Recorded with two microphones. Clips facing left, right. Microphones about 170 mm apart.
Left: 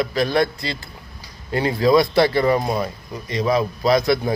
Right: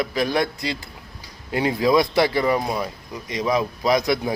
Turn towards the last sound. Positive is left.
turn(degrees=-15)  # may be behind; listen again after turning